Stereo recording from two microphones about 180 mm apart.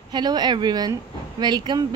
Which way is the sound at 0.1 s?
25° right (ahead or behind).